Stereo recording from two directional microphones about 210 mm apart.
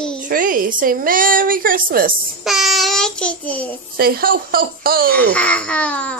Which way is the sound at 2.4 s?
Centre (ahead or behind).